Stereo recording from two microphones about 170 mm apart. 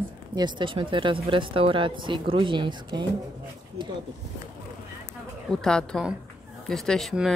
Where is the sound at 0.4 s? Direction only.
25° right (ahead or behind).